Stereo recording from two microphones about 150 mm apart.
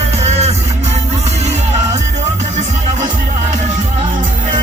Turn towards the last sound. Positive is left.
turn(degrees=-50)  # may be behind; listen again after turning